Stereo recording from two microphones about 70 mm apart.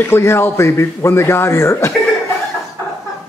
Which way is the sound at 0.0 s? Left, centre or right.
Left.